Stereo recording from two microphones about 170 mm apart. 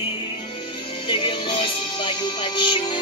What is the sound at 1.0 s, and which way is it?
Music, 30° left (ahead or behind).